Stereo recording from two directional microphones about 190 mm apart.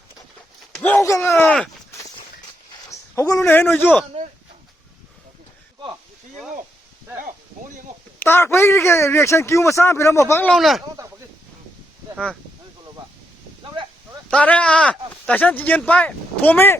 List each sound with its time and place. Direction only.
0.8 s speech: 10° left (ahead or behind)
2.9 s speech: 15° left (ahead or behind)
4.1 s a sound: 25° right (ahead or behind)
8.2 s speech: 10° left (ahead or behind)
10.5 s speech: centre (ahead or behind)
12.1 s speech: 5° left (ahead or behind)
14.3 s speech: 5° left (ahead or behind)